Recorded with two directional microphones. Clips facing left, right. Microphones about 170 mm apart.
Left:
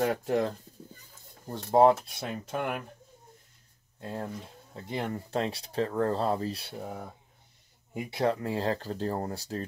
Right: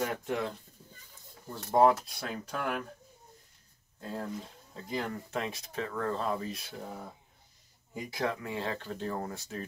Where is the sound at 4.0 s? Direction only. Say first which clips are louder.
Left 1 dB; 30° left (ahead or behind).